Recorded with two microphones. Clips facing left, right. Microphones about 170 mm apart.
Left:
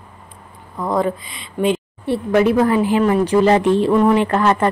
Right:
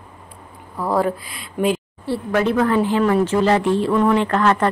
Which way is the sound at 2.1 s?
20° left (ahead or behind).